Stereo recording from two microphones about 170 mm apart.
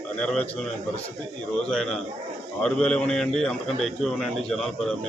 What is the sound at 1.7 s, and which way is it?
A man's voice, centre (ahead or behind).